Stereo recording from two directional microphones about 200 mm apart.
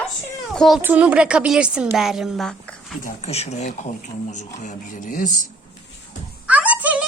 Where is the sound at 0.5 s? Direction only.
Centre (ahead or behind).